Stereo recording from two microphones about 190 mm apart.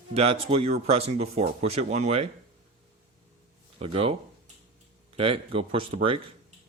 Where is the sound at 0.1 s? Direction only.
30° right (ahead or behind).